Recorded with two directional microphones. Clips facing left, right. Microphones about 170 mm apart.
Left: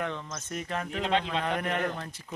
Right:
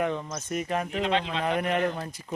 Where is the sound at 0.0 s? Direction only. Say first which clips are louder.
Right 6 dB; 15° right (ahead or behind).